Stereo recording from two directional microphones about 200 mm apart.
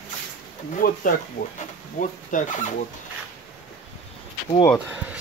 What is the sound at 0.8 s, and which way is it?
Speech, 45° left (ahead or behind).